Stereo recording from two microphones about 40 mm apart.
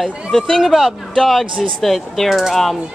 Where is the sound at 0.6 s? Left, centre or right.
Centre.